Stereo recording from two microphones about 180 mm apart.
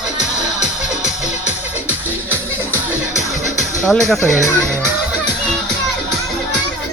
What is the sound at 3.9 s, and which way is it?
Speech, centre (ahead or behind).